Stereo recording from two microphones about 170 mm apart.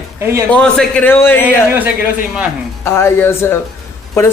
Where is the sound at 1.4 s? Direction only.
10° right (ahead or behind).